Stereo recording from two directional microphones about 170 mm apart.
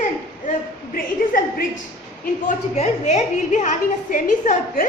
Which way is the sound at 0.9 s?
55° left (ahead or behind).